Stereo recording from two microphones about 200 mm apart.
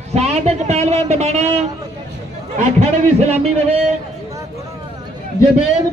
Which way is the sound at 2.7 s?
35° right (ahead or behind).